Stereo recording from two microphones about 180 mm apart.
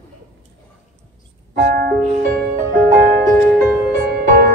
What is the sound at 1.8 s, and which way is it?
Music, 50° right (ahead or behind).